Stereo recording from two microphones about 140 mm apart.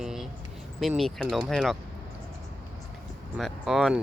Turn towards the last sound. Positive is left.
turn(degrees=0)  # may be behind; listen again after turning